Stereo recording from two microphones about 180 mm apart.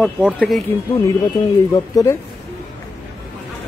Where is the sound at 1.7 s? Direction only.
20° left (ahead or behind).